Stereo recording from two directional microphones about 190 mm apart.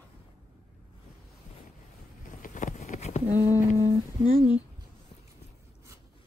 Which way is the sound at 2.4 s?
40° left (ahead or behind).